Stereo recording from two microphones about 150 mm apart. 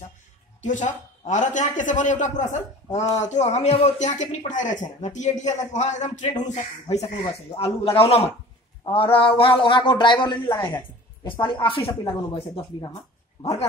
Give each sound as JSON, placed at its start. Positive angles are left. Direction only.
{"t": 0.6, "sound": "a man's voice", "side_deg": 55}